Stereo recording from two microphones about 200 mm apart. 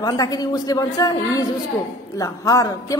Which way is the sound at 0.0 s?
20° left (ahead or behind).